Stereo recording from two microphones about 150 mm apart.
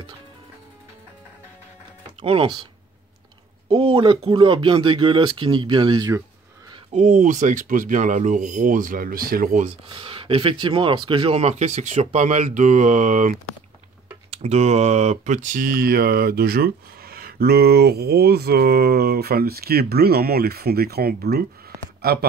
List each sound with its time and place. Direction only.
2.2 s speech: 35° right (ahead or behind)
6.9 s speech: 55° right (ahead or behind)
9.8 s speech: 35° right (ahead or behind); by 13.4 s 60° right (ahead or behind)
14.3 s speech: 45° right (ahead or behind); by 21.5 s 90° right